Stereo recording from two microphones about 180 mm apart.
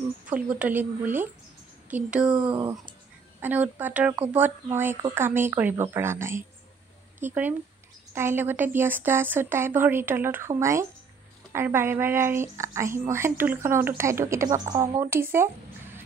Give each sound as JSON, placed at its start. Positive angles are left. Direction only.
{"t": 0.3, "sound": "a woman's voice", "side_deg": -10}
{"t": 2.3, "sound": "speech", "side_deg": -25}
{"t": 3.3, "sound": "a woman's voice", "side_deg": -10}